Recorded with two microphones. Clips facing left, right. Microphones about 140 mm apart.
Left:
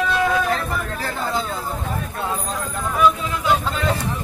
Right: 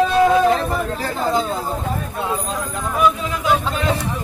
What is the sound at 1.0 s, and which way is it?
Speech, 15° right (ahead or behind).